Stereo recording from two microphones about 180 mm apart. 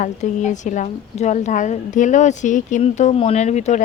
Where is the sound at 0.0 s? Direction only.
45° left (ahead or behind).